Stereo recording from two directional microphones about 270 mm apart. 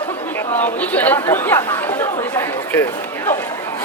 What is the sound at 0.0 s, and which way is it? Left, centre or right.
Chatter, centre.